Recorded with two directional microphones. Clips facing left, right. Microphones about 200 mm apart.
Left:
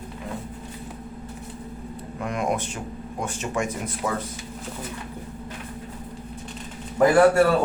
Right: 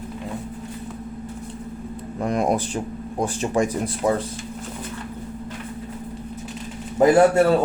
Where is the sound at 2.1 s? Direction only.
35° right (ahead or behind).